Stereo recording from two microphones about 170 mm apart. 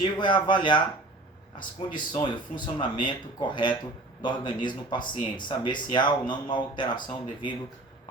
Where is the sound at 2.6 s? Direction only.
25° left (ahead or behind).